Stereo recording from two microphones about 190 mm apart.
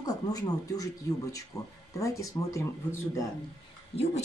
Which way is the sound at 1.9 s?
15° left (ahead or behind).